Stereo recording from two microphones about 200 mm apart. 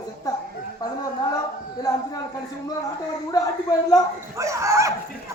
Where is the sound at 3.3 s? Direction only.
15° left (ahead or behind).